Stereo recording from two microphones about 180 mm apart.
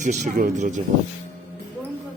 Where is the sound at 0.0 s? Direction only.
40° right (ahead or behind).